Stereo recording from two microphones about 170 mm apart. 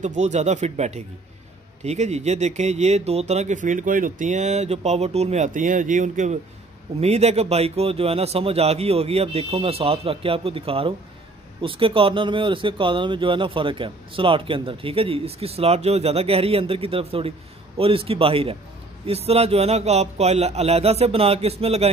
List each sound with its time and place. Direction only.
0.0 s speech: 45° right (ahead or behind)